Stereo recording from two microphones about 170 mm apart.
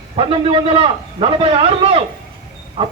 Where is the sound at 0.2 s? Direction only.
30° right (ahead or behind).